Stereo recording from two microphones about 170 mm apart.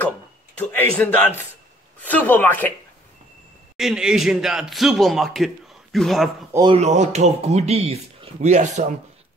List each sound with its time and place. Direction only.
0.6 s speech: 10° left (ahead or behind)
3.7 s speech: 5° right (ahead or behind)
6.7 s speech: 40° right (ahead or behind)